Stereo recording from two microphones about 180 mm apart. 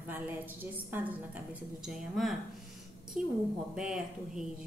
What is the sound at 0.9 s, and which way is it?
A woman's voice, 10° right (ahead or behind).